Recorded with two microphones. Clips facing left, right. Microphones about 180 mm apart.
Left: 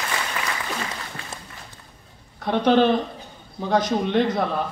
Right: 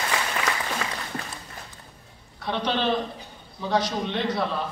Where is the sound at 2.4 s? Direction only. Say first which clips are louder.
Left 9 dB; 50° left (ahead or behind).